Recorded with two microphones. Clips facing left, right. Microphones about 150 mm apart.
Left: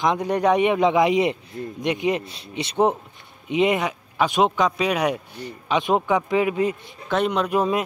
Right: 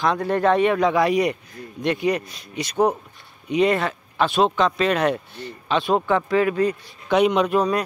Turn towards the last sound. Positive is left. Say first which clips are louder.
# right 1 dB
turn(degrees=20)  # may be behind; listen again after turning